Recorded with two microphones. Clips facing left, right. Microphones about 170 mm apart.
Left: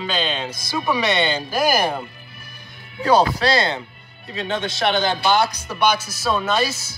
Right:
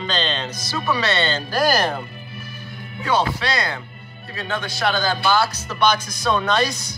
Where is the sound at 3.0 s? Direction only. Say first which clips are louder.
Left 5 dB; 35° left (ahead or behind).